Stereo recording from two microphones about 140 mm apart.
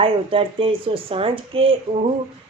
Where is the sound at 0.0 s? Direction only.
40° right (ahead or behind).